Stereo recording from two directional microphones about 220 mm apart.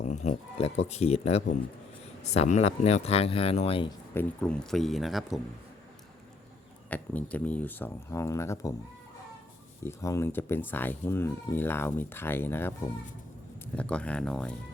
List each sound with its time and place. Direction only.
0.0 s speech: 30° left (ahead or behind)
4.1 s speech: 5° left (ahead or behind)
6.9 s speech: 5° left (ahead or behind)
9.8 s speech: 15° left (ahead or behind)
13.7 s speech: 5° left (ahead or behind)